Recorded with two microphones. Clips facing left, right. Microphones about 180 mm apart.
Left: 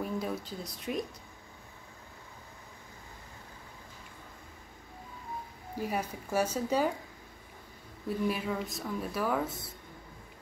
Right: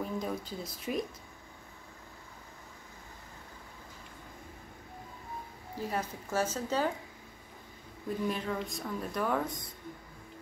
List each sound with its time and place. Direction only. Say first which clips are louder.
0.0 s speech: left 1 dB; 5° left (ahead or behind)
5.8 s speech: left 1 dB; 10° left (ahead or behind)
8.3 s speech: left 1 dB; 5° left (ahead or behind)